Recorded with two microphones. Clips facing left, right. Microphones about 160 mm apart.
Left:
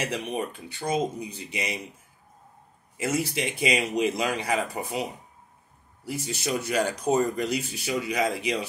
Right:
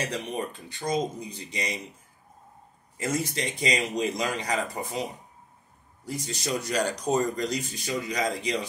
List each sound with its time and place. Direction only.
0.0 s speech: 10° left (ahead or behind)
3.0 s speech: 5° left (ahead or behind)
6.2 s speech: 5° left (ahead or behind)